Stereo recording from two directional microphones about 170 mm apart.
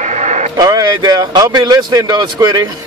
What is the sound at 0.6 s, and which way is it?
Speech, 20° right (ahead or behind).